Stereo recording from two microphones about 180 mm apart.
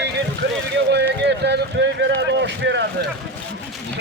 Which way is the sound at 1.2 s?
70° right (ahead or behind).